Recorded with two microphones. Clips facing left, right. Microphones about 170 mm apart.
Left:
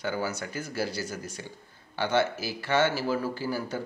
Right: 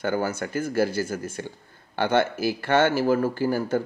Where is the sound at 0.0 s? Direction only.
50° right (ahead or behind).